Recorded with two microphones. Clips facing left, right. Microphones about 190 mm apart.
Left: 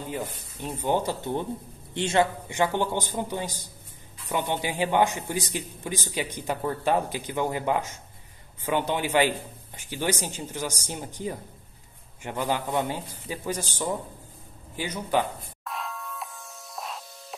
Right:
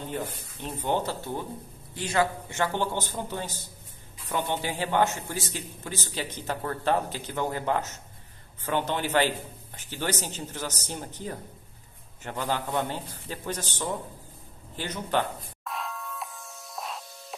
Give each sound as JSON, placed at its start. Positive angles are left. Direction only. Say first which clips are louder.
{"t": 0.1, "sound": "a man's voice", "louder": "even", "side_deg": 10}
{"t": 2.4, "sound": "a man's voice", "louder": "left 3 dB", "side_deg": 15}
{"t": 14.8, "sound": "music", "louder": "left 2 dB", "side_deg": 10}